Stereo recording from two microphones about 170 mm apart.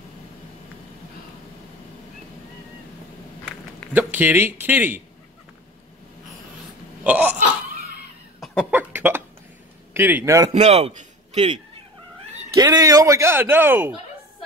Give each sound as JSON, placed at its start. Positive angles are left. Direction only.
{"t": 3.9, "sound": "speech", "side_deg": -10}
{"t": 7.0, "sound": "a sound", "side_deg": -10}
{"t": 8.4, "sound": "cough", "side_deg": 0}
{"t": 8.7, "sound": "cough", "side_deg": -10}
{"t": 9.9, "sound": "speech", "side_deg": -10}
{"t": 10.5, "sound": "a man's voice", "side_deg": -40}
{"t": 12.5, "sound": "speech", "side_deg": -20}